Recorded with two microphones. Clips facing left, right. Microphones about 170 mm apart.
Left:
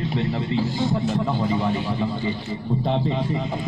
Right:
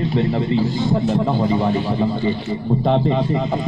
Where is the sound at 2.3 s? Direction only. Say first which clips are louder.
Right 6 dB; 65° right (ahead or behind).